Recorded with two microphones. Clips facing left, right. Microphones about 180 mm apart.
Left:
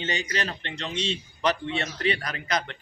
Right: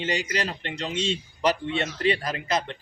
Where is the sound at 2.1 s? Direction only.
30° right (ahead or behind).